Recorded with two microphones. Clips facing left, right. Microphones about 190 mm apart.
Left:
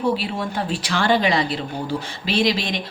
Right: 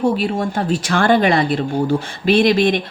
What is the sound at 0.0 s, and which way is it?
Speech, 45° right (ahead or behind).